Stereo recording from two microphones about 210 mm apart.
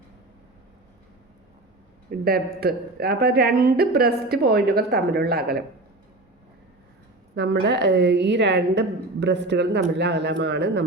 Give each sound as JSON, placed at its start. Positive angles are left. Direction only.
{"t": 2.2, "sound": "speech", "side_deg": -45}
{"t": 7.7, "sound": "speech", "side_deg": -55}